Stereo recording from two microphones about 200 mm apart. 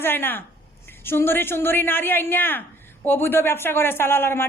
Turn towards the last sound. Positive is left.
turn(degrees=10)  # may be behind; listen again after turning